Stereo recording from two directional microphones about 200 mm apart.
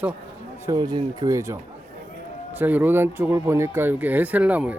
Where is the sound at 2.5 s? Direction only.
10° right (ahead or behind).